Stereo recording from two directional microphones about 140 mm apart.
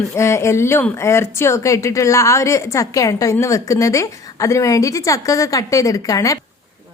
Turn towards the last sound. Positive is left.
turn(degrees=25)  # may be behind; listen again after turning